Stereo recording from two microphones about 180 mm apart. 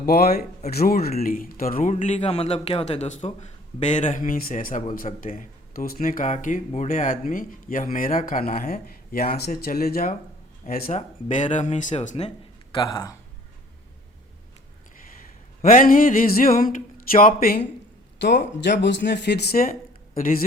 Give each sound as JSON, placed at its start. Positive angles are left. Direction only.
{"t": 0.0, "sound": "a man's voice", "side_deg": 60}
{"t": 2.0, "sound": "a man's voice", "side_deg": 35}
{"t": 12.7, "sound": "speech", "side_deg": 25}
{"t": 15.6, "sound": "a man's voice", "side_deg": 50}
{"t": 18.2, "sound": "a man's voice", "side_deg": 75}